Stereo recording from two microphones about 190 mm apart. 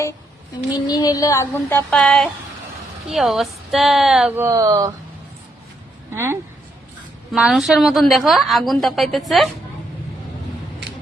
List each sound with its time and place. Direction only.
0.9 s a sound: 20° left (ahead or behind); by 2.3 s 5° left (ahead or behind)
3.1 s a woman's voice: centre (ahead or behind); by 4.9 s 20° right (ahead or behind)
6.1 s speech: 10° right (ahead or behind)
7.3 s a woman's voice: centre (ahead or behind)